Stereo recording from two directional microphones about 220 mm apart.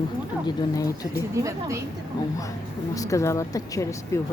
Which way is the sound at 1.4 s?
15° right (ahead or behind).